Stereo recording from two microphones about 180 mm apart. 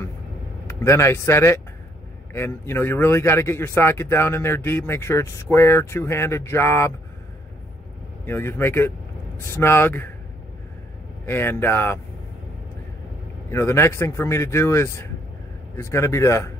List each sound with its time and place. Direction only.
0.7 s a man's voice: 15° left (ahead or behind)
8.3 s a man's voice: 15° left (ahead or behind)
11.2 s a man's voice: 10° left (ahead or behind)
13.5 s a man's voice: 15° left (ahead or behind)